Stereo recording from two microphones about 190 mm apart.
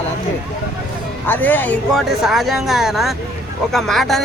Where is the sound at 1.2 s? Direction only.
10° left (ahead or behind).